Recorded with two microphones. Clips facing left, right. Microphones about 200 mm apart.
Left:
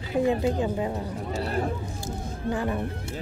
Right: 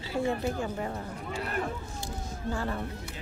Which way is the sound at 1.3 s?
35° left (ahead or behind).